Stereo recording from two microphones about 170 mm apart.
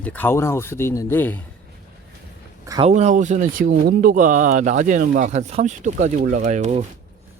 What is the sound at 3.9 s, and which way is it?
Speech, 55° right (ahead or behind).